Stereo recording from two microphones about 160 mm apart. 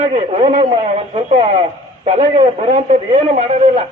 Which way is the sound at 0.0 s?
45° right (ahead or behind).